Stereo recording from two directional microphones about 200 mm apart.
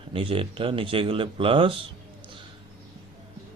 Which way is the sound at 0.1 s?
25° right (ahead or behind).